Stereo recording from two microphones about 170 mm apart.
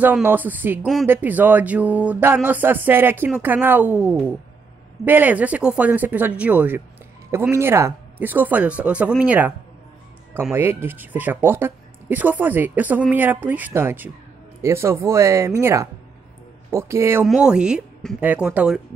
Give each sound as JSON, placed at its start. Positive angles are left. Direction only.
{"t": 0.0, "sound": "speech", "side_deg": -10}
{"t": 17.2, "sound": "speech", "side_deg": -5}